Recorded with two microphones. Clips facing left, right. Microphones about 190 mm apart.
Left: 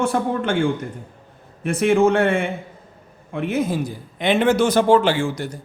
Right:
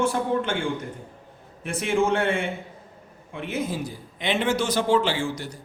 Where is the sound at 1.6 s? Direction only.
60° left (ahead or behind).